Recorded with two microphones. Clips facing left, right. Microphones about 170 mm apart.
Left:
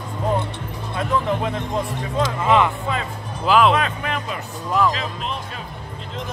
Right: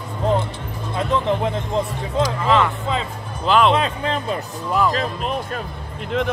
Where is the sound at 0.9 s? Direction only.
20° right (ahead or behind).